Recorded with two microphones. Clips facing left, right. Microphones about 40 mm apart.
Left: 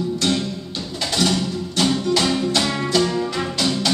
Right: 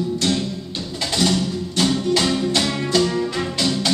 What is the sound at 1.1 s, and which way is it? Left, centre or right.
Music, centre.